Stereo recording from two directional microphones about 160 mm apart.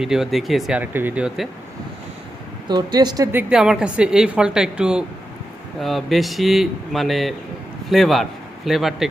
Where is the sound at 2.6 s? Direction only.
25° right (ahead or behind).